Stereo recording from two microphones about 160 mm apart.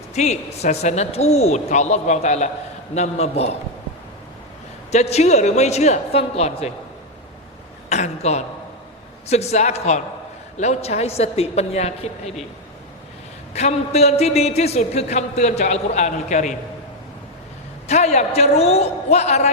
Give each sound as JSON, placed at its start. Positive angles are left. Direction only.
{"t": 0.1, "sound": "a man's voice", "side_deg": 45}
{"t": 4.9, "sound": "a man's voice", "side_deg": 45}
{"t": 7.9, "sound": "a man's voice", "side_deg": 45}
{"t": 13.5, "sound": "a man's voice", "side_deg": 40}
{"t": 17.8, "sound": "a man's voice", "side_deg": 45}